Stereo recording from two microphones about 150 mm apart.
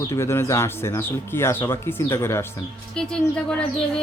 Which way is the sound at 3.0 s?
5° left (ahead or behind).